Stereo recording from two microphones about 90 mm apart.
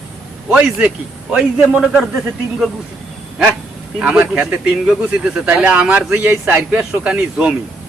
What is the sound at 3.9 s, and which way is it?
Speech, 15° right (ahead or behind).